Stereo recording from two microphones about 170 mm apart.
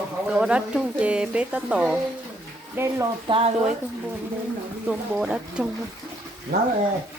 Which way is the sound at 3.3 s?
30° right (ahead or behind).